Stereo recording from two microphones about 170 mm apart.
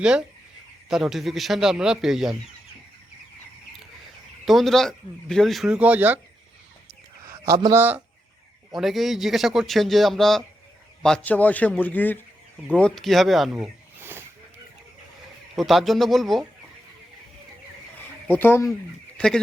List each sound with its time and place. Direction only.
0.0 s speech: 5° right (ahead or behind)
4.4 s speech: centre (ahead or behind)
7.3 s speech: 20° right (ahead or behind)
8.7 s a man's voice: centre (ahead or behind)
14.0 s a sound: 15° right (ahead or behind)
15.5 s speech: centre (ahead or behind)
18.3 s a man's voice: 10° left (ahead or behind)
19.1 s a sound: 5° left (ahead or behind)